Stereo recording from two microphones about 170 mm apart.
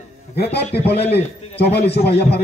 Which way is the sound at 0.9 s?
75° left (ahead or behind).